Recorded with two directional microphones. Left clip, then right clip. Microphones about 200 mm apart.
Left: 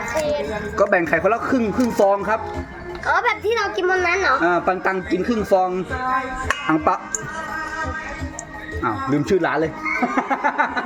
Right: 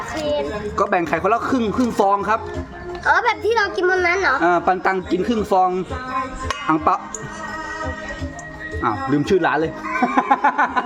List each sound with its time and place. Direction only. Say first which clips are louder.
0.8 s speech: left 2 dB; 5° left (ahead or behind)
3.1 s a woman's voice: right 2 dB; 35° right (ahead or behind)
4.4 s speech: right 2 dB; centre (ahead or behind)
8.8 s speech: right 1 dB; 5° right (ahead or behind)